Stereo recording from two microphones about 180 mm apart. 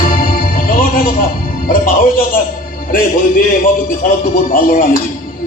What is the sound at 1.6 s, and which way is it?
A woman's voice, 50° left (ahead or behind).